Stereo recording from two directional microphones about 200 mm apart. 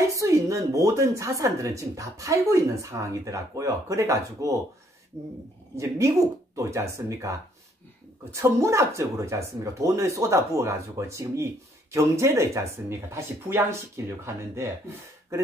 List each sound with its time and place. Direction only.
0.1 s a woman's voice: 15° right (ahead or behind)
5.8 s a woman's voice: 15° right (ahead or behind)